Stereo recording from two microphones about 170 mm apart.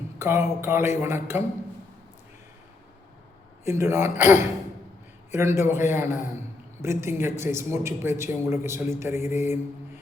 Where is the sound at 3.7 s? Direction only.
15° right (ahead or behind).